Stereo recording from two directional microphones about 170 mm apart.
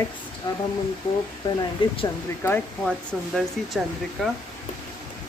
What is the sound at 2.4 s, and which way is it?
Speech, 15° left (ahead or behind).